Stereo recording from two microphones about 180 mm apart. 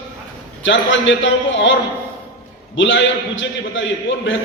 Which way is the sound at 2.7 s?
90° left.